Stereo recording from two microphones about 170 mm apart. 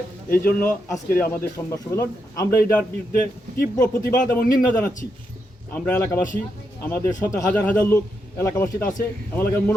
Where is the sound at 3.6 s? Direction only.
60° left (ahead or behind).